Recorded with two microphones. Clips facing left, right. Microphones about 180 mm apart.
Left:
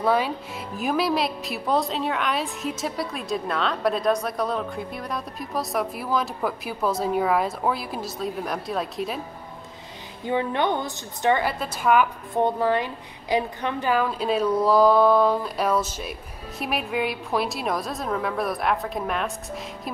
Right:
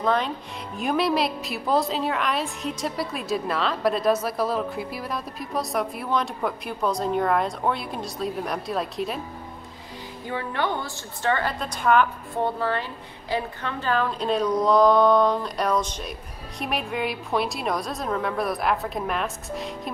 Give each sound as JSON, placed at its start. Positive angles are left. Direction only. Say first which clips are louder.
{"t": 0.0, "sound": "a woman's voice", "louder": "left 2 dB", "side_deg": 10}
{"t": 10.2, "sound": "a woman's voice", "louder": "left 4 dB", "side_deg": 20}
{"t": 11.6, "sound": "a woman's voice", "louder": "right 2 dB", "side_deg": 5}